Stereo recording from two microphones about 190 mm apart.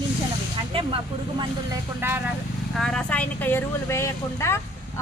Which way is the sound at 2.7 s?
5° left (ahead or behind).